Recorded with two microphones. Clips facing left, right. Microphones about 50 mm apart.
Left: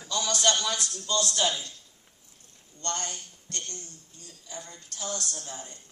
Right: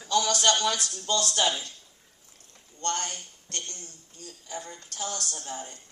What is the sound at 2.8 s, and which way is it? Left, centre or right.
A woman's voice, right.